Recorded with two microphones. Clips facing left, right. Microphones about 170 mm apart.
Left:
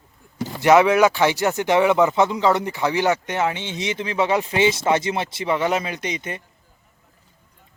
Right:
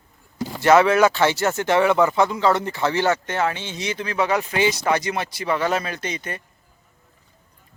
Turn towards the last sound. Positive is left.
turn(degrees=20)  # may be behind; listen again after turning